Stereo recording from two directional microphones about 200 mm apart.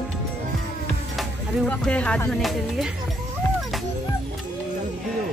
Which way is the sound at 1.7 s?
5° left (ahead or behind).